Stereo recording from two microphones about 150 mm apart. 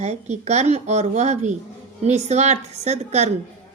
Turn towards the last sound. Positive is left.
turn(degrees=-45)  # may be behind; listen again after turning